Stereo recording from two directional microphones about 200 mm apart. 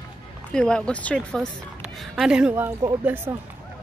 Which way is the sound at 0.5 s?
5° left (ahead or behind).